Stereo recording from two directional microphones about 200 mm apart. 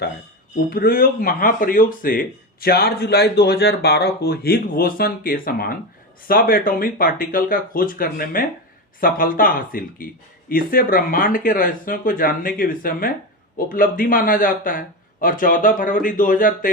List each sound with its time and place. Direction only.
0.7 s speech: 45° left (ahead or behind)